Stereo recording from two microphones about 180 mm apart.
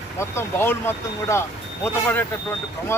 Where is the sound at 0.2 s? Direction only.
15° left (ahead or behind).